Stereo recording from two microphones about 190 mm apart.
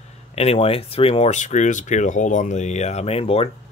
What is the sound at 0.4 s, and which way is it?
Speech, 30° left (ahead or behind).